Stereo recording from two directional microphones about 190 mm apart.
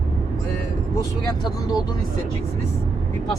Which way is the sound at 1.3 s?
20° left (ahead or behind).